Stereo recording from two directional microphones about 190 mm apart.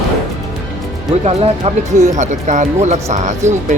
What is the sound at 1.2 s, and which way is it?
Speech, 35° right (ahead or behind).